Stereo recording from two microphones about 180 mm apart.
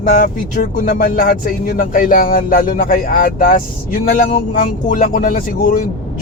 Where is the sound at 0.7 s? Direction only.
50° left (ahead or behind).